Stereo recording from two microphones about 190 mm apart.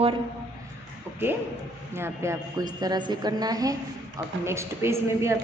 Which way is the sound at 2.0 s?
15° right (ahead or behind).